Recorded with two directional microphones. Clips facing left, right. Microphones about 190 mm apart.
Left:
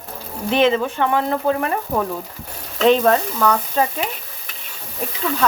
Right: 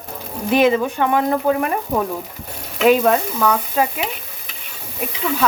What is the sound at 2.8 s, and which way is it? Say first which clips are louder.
Speech: even; 10° right (ahead or behind).